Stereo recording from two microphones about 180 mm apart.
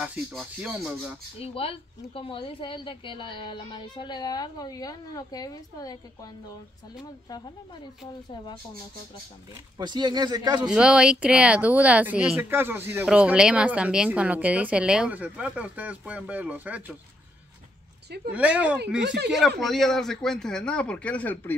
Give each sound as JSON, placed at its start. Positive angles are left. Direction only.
{"t": 0.0, "sound": "speech", "side_deg": -5}
{"t": 1.4, "sound": "a woman's voice", "side_deg": 30}
{"t": 7.2, "sound": "a woman's voice", "side_deg": 25}
{"t": 9.8, "sound": "speech", "side_deg": -25}
{"t": 10.7, "sound": "speech", "side_deg": -5}
{"t": 18.3, "sound": "a man's voice", "side_deg": -10}